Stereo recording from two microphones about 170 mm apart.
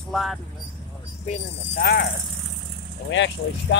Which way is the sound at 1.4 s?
70° left (ahead or behind).